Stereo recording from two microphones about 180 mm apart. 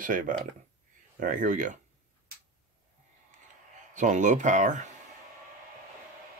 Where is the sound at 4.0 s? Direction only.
45° right (ahead or behind).